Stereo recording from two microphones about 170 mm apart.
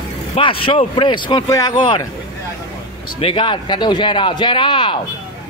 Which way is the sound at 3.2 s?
30° left (ahead or behind).